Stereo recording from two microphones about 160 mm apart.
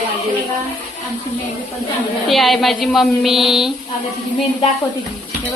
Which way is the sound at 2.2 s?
Centre (ahead or behind).